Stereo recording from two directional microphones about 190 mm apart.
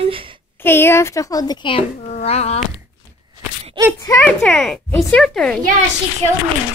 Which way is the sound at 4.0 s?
15° left (ahead or behind).